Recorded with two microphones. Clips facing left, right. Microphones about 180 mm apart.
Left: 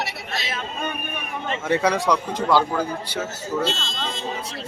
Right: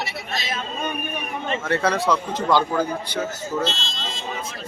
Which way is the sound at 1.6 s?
15° left (ahead or behind).